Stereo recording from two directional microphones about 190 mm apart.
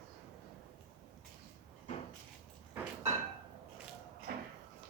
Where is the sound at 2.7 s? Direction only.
15° right (ahead or behind).